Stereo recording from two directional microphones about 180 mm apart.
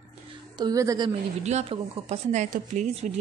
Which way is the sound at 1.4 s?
40° right (ahead or behind).